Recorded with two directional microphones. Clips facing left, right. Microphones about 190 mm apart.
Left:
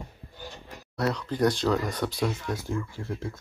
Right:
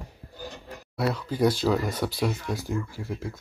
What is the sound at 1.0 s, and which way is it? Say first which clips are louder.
Speech: right 1 dB; 5° right (ahead or behind).